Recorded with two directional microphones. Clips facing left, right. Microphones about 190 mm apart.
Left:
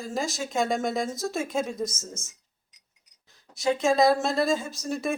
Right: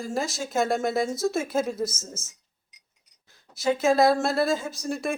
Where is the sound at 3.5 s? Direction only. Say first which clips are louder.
Right 1 dB; centre (ahead or behind).